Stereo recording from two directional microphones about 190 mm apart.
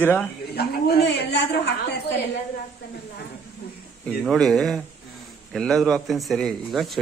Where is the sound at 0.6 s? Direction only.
60° left (ahead or behind).